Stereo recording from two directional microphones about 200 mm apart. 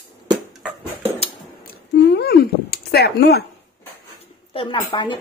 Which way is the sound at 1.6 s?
55° left (ahead or behind).